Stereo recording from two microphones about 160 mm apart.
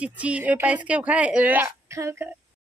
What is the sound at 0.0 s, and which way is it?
Speech, 10° right (ahead or behind).